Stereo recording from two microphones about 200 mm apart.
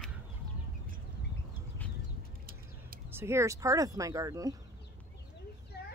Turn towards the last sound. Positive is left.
turn(degrees=-15)  # may be behind; listen again after turning